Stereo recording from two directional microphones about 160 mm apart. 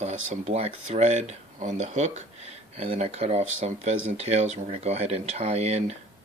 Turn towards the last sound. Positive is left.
turn(degrees=-40)  # may be behind; listen again after turning